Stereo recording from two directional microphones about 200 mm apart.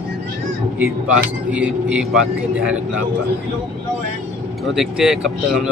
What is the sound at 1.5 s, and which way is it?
Speech, 5° right (ahead or behind).